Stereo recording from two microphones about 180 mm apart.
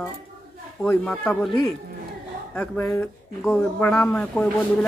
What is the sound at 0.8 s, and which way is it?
Speech, 5° left (ahead or behind).